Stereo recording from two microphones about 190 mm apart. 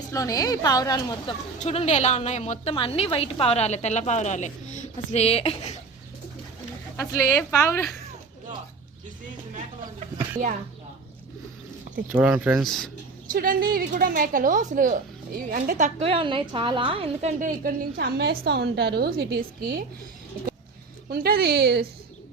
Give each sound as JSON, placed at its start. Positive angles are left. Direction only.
{"t": 0.1, "sound": "a woman's voice", "side_deg": 20}
{"t": 1.5, "sound": "a woman's voice", "side_deg": 35}
{"t": 6.9, "sound": "a woman's voice", "side_deg": 10}
{"t": 12.1, "sound": "speech", "side_deg": -5}
{"t": 13.3, "sound": "a woman's voice", "side_deg": -50}
{"t": 18.0, "sound": "a woman's voice", "side_deg": -60}
{"t": 21.1, "sound": "a woman's voice", "side_deg": -50}